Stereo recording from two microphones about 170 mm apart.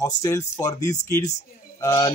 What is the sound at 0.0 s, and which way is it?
A man's voice, 20° left (ahead or behind).